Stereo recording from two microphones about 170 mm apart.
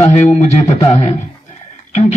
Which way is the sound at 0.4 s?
40° left (ahead or behind).